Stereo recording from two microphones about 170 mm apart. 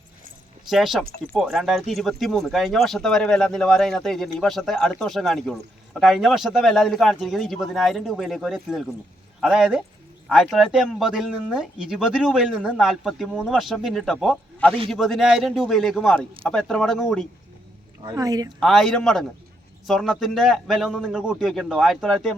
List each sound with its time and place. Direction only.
0.7 s speech: centre (ahead or behind)
18.0 s speech: 20° right (ahead or behind)
18.6 s speech: centre (ahead or behind)